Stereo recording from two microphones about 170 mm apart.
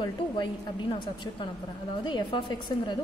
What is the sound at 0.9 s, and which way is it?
A woman's voice, 25° left (ahead or behind).